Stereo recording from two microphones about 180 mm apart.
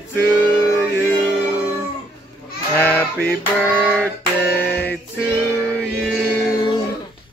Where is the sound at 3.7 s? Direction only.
10° left (ahead or behind).